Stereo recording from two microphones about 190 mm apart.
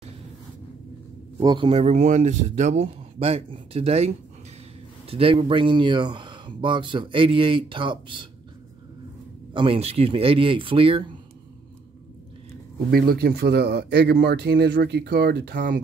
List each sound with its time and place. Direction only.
1.4 s speech: 25° right (ahead or behind)
9.5 s speech: 25° right (ahead or behind)
12.9 s speech: 50° right (ahead or behind)